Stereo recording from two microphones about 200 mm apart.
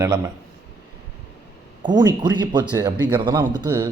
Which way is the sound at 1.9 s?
20° right (ahead or behind).